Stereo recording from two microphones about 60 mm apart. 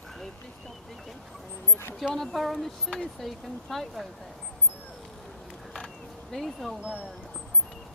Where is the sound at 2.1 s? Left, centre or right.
Centre.